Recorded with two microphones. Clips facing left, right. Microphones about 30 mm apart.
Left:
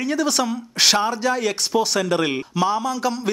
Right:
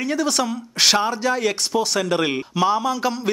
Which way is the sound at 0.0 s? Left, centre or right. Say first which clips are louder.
Even; centre.